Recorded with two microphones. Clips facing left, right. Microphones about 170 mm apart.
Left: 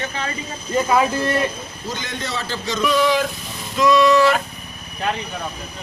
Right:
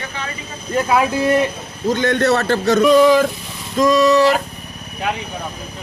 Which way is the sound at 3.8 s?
45° right (ahead or behind).